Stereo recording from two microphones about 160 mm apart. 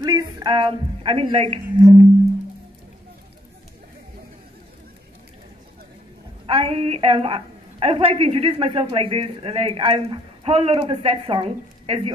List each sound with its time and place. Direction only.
0.0 s a woman's voice: 25° right (ahead or behind)
6.4 s a woman's voice: 35° right (ahead or behind)